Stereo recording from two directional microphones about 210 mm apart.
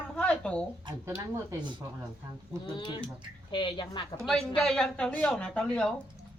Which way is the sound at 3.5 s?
20° left (ahead or behind).